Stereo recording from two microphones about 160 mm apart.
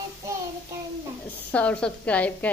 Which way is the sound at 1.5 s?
10° left (ahead or behind).